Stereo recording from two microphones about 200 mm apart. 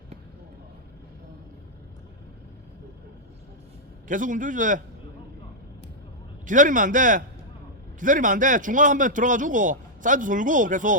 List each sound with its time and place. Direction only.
4.1 s a man's voice: 40° right (ahead or behind)
6.4 s a man's voice: 40° right (ahead or behind)